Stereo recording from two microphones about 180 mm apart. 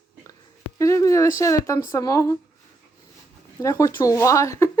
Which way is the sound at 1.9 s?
20° left (ahead or behind).